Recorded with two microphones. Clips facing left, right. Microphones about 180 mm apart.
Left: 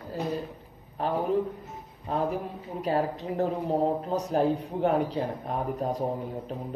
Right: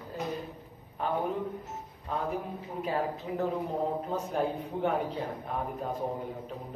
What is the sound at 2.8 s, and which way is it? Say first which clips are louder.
Speech: left 5 dB; 40° left (ahead or behind).